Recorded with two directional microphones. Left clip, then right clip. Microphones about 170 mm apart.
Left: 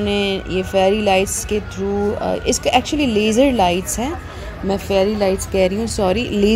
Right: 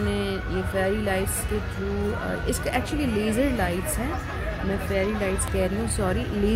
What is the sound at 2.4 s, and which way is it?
Speech, 20° left (ahead or behind).